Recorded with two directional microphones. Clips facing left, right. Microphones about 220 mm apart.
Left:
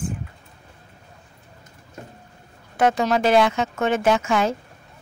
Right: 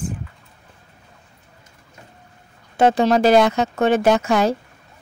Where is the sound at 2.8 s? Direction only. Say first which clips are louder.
Right 4 dB; 30° right (ahead or behind).